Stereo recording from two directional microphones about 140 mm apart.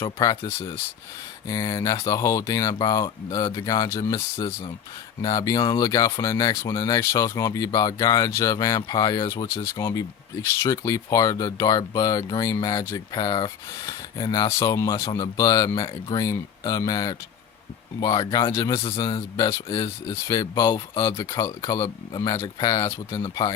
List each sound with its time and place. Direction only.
0.0 s speech: 25° left (ahead or behind)
4.4 s speech: 35° left (ahead or behind)
18.8 s speech: 40° left (ahead or behind)
19.0 s speech: 25° left (ahead or behind)